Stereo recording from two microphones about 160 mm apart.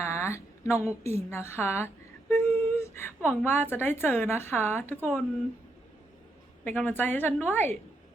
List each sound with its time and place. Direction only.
0.0 s a sound: 15° left (ahead or behind)
1.0 s a woman's voice: 15° left (ahead or behind)
2.3 s a sound: 15° left (ahead or behind)
3.4 s a woman's voice: 15° left (ahead or behind)
4.9 s speech: 5° right (ahead or behind)
6.7 s a woman's voice: 10° left (ahead or behind)